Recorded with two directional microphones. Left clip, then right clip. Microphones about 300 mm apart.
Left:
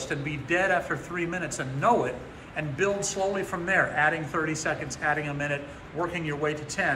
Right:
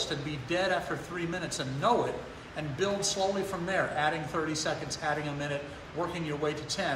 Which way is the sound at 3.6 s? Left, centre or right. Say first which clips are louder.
Left 6 dB; centre.